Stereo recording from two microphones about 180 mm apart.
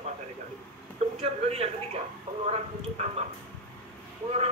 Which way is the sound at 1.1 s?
35° right (ahead or behind).